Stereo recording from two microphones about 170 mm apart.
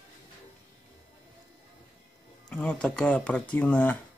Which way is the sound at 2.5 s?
5° left (ahead or behind).